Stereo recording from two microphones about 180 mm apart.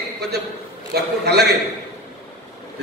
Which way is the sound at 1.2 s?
65° right (ahead or behind).